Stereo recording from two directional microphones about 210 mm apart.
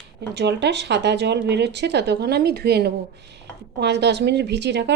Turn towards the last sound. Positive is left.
turn(degrees=-55)  # may be behind; listen again after turning